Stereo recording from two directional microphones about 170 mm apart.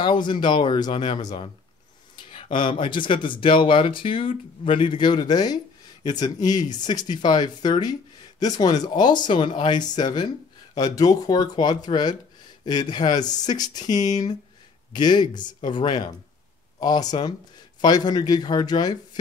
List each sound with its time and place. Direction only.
0.0 s speech: 25° left (ahead or behind)